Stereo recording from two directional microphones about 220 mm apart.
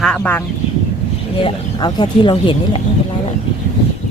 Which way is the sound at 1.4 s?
20° left (ahead or behind).